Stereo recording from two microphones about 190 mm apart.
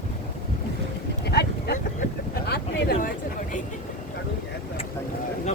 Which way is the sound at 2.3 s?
50° left (ahead or behind).